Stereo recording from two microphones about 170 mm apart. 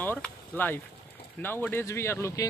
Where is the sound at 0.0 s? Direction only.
10° left (ahead or behind).